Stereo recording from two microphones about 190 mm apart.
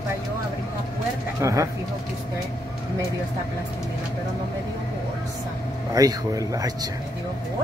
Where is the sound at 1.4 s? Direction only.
15° right (ahead or behind).